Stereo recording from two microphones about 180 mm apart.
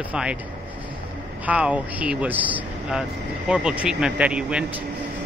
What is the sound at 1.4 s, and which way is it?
Speech, 10° right (ahead or behind).